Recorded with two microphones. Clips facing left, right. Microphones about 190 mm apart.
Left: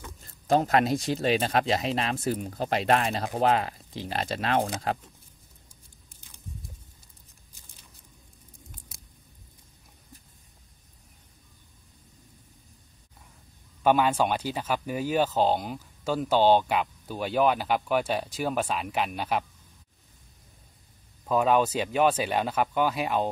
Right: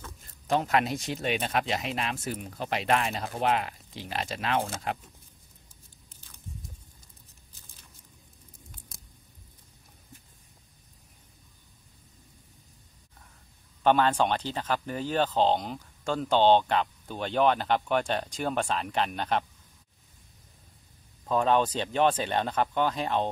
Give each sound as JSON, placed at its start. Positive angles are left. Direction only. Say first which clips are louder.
{"t": 0.5, "sound": "speech", "louder": "left 4 dB", "side_deg": 40}
{"t": 8.7, "sound": "a sound", "louder": "even", "side_deg": 5}
{"t": 13.8, "sound": "speech", "louder": "left 1 dB", "side_deg": 10}
{"t": 21.3, "sound": "speech", "louder": "left 2 dB", "side_deg": 5}